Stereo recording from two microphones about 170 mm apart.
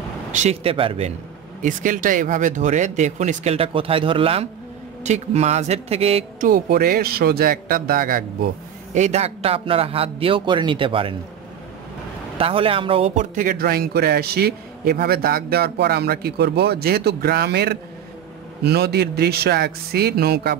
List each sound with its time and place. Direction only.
0.3 s a man's voice: 40° right (ahead or behind)
1.6 s a man's voice: 50° right (ahead or behind)
6.4 s speech: 60° right (ahead or behind)
8.9 s a man's voice: 40° right (ahead or behind)
12.4 s a man's voice: 35° right (ahead or behind); by 20.5 s 65° right (ahead or behind)